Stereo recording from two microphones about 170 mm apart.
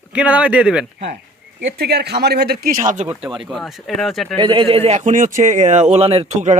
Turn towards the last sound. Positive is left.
turn(degrees=-45)  # may be behind; listen again after turning